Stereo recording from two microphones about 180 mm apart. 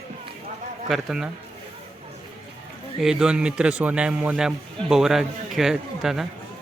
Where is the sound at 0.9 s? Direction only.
Centre (ahead or behind).